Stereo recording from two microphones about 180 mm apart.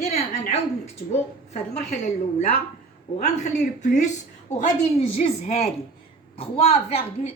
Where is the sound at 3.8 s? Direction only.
40° left (ahead or behind).